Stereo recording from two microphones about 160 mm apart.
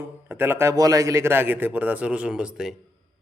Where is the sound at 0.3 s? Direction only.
15° right (ahead or behind).